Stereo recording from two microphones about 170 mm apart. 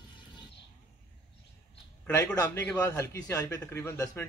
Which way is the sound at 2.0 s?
15° left (ahead or behind).